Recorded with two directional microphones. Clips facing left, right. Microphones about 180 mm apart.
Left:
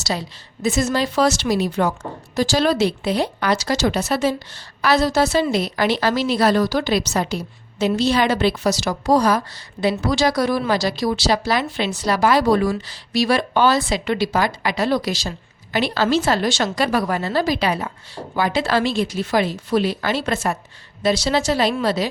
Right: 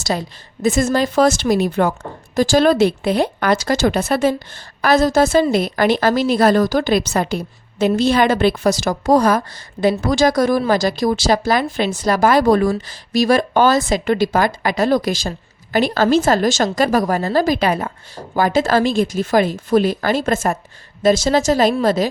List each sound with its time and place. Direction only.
0.0 s speech: 50° right (ahead or behind)